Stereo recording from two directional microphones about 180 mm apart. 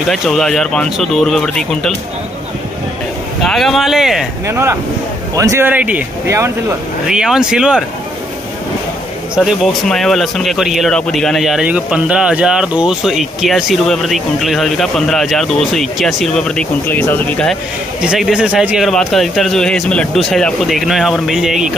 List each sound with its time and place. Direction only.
0.1 s speech: centre (ahead or behind)
3.4 s speech: centre (ahead or behind)
4.5 s speech: 15° right (ahead or behind)
7.1 s speech: 5° right (ahead or behind)
9.3 s speech: centre (ahead or behind)
18.0 s speech: 5° right (ahead or behind)